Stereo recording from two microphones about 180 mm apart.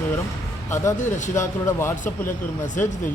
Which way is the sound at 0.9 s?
40° left (ahead or behind).